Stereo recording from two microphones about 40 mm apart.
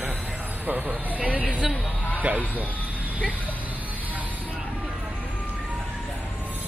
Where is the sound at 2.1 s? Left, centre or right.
Right.